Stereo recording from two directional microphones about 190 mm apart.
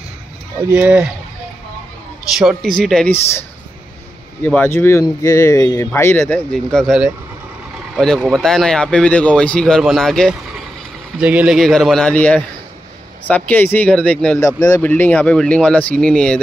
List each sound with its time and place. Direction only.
0.6 s speech: 10° right (ahead or behind)
2.3 s speech: centre (ahead or behind)
4.4 s speech: 10° left (ahead or behind)